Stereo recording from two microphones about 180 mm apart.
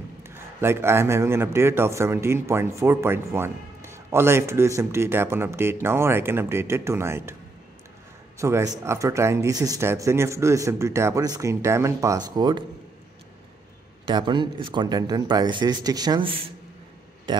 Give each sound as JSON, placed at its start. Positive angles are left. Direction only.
{"t": 0.2, "sound": "a man's voice", "side_deg": -15}
{"t": 8.4, "sound": "a man's voice", "side_deg": -15}
{"t": 14.0, "sound": "speech", "side_deg": -25}